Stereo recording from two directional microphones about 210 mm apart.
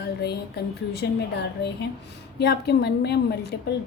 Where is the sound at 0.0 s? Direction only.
50° left (ahead or behind).